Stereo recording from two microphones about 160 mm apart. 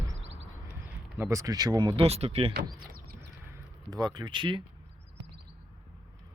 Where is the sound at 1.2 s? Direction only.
20° right (ahead or behind); by 2.5 s 40° right (ahead or behind).